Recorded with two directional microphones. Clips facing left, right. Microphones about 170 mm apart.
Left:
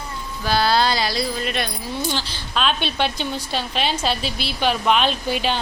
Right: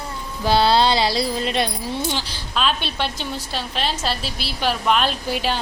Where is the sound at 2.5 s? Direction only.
Centre (ahead or behind).